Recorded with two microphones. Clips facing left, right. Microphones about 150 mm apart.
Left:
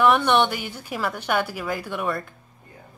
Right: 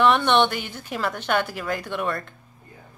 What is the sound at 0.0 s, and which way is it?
A woman's voice, 5° left (ahead or behind).